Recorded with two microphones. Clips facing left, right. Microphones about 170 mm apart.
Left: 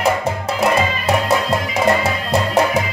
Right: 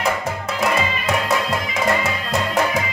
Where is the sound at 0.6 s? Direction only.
35° left (ahead or behind).